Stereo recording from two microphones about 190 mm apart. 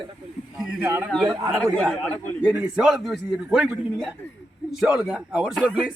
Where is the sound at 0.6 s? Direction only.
5° right (ahead or behind).